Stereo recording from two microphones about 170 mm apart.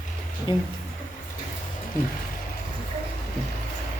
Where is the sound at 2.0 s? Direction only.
55° left (ahead or behind).